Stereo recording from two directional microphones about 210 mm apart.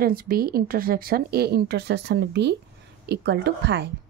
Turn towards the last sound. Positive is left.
turn(degrees=-50)  # may be behind; listen again after turning